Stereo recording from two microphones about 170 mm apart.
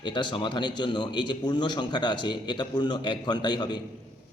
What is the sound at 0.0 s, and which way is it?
A man's voice, 30° left (ahead or behind).